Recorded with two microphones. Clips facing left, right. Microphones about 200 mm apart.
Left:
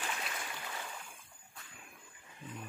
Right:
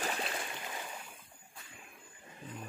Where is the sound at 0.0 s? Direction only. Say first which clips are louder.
Right 5 dB; 35° right (ahead or behind).